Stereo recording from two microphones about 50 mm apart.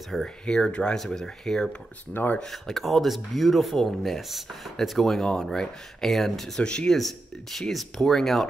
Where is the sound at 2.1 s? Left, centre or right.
Left.